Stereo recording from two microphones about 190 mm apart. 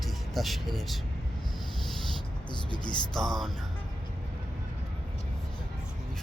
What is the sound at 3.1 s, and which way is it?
Speech, centre (ahead or behind).